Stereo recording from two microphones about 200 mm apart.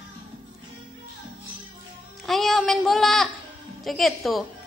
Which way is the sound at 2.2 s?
Centre (ahead or behind).